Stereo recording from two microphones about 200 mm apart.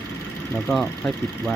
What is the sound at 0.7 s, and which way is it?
Speech, centre (ahead or behind).